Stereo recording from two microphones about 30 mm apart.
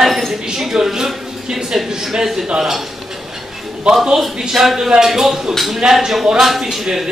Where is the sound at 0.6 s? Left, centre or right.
Centre.